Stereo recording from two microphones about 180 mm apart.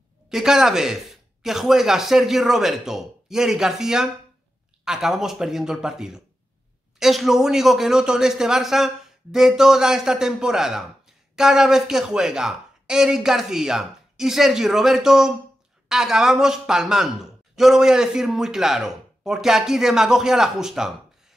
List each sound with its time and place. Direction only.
0.3 s a man's voice: centre (ahead or behind)